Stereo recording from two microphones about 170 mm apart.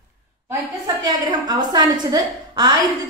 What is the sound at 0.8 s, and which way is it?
A woman's voice, 25° right (ahead or behind).